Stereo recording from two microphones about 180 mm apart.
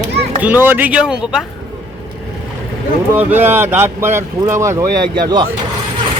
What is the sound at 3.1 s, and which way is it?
Speech, 10° right (ahead or behind).